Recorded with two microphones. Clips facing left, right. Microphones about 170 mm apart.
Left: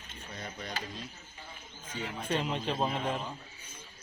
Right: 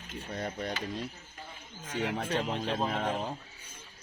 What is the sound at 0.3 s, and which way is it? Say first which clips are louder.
Mechanisms: right 6 dB; 50° right (ahead or behind).